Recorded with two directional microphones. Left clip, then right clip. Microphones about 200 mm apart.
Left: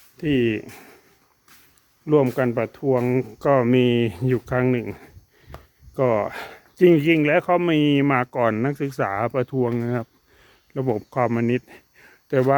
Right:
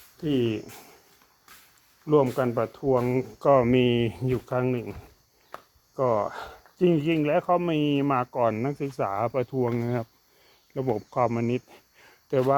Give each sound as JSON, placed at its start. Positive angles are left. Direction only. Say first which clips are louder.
{"t": 0.2, "sound": "speech", "louder": "left 5 dB", "side_deg": 25}
{"t": 2.0, "sound": "speech", "louder": "left 3 dB", "side_deg": 30}
{"t": 6.0, "sound": "speech", "louder": "left 4 dB", "side_deg": 45}